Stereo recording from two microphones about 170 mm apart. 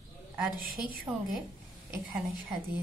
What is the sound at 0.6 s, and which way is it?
Speech, 60° right (ahead or behind).